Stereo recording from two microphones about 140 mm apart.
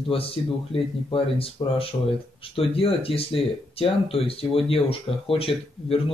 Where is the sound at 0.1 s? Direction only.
40° left (ahead or behind).